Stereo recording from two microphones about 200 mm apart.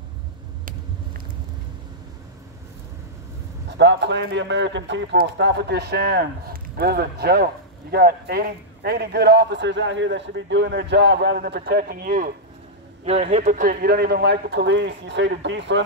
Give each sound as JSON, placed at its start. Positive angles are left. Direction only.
{"t": 3.7, "sound": "a man's voice", "side_deg": -60}
{"t": 13.0, "sound": "a man's voice", "side_deg": -30}